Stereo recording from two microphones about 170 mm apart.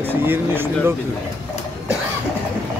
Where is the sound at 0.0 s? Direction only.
10° right (ahead or behind).